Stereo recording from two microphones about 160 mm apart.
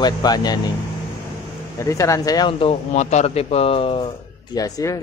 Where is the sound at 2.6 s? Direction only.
45° left (ahead or behind).